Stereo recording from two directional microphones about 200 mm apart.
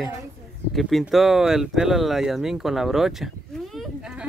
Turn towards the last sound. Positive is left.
turn(degrees=0)  # may be behind; listen again after turning